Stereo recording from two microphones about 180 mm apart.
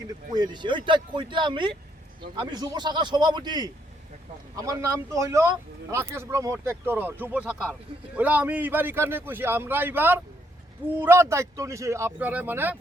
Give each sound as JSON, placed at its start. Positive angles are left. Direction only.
{"t": 0.3, "sound": "a man's voice", "side_deg": -25}